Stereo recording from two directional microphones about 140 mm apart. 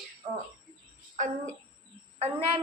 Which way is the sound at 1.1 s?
65° right (ahead or behind).